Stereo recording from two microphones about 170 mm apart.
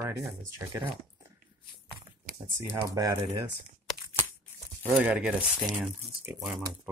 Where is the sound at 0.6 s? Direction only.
15° right (ahead or behind).